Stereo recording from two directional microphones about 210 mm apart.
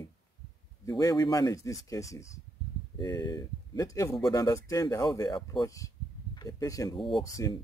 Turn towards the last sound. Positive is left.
turn(degrees=15)  # may be behind; listen again after turning